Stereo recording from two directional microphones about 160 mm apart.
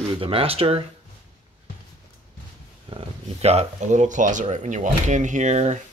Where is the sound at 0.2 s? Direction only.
35° right (ahead or behind).